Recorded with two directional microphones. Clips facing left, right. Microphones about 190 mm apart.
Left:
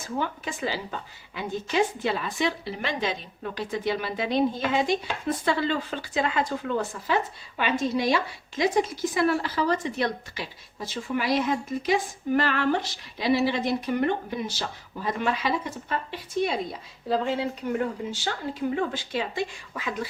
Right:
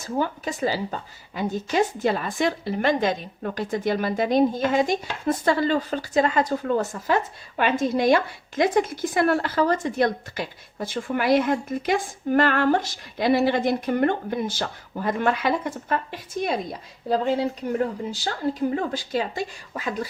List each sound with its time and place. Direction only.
0.0 s a woman's voice: 40° right (ahead or behind)